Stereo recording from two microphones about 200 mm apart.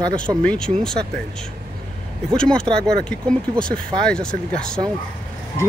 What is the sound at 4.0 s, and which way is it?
Speech, 5° left (ahead or behind).